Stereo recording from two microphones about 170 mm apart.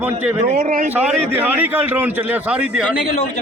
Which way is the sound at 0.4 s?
45° right (ahead or behind).